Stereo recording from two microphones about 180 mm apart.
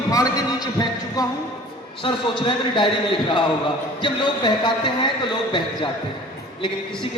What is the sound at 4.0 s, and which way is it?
A man's voice, 25° left (ahead or behind).